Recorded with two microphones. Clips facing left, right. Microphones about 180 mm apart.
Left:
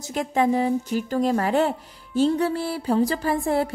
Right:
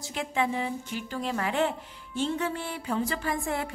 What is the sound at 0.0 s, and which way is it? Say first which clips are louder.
Speech: left 7 dB; 40° left (ahead or behind).